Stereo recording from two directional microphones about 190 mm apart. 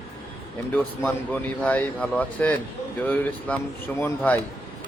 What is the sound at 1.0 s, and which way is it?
Speech, 10° left (ahead or behind).